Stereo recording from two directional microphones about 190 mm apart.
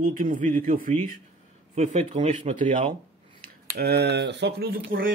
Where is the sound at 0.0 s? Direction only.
45° right (ahead or behind).